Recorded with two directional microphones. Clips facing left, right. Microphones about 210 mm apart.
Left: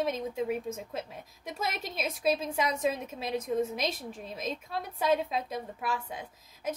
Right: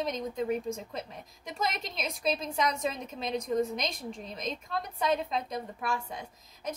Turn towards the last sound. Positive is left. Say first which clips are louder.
# left 2 dB
turn(degrees=5)  # may be behind; listen again after turning